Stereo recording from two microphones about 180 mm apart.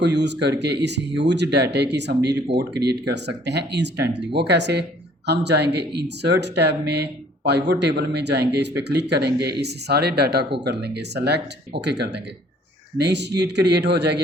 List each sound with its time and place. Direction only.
0.0 s speech: 70° right (ahead or behind)